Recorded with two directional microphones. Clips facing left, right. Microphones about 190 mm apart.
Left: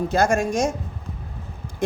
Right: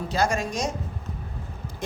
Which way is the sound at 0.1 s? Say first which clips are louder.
Left 3 dB; 50° left (ahead or behind).